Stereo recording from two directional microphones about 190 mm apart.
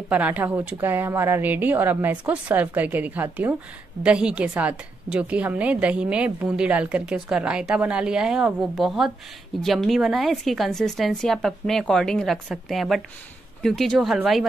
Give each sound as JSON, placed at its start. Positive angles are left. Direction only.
{"t": 0.1, "sound": "a woman's voice", "side_deg": -10}